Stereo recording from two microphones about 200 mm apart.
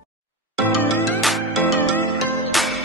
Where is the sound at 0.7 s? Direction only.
10° left (ahead or behind).